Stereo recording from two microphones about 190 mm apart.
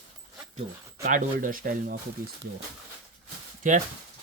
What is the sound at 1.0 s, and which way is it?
Speech, 45° right (ahead or behind).